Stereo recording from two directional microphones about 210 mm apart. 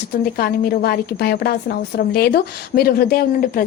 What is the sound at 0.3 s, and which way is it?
A woman's voice, 45° left (ahead or behind).